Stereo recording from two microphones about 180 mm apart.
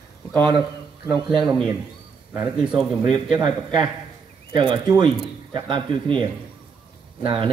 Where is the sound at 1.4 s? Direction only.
Centre (ahead or behind).